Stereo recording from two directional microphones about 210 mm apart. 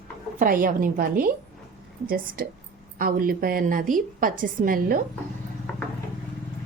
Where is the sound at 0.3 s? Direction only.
40° right (ahead or behind).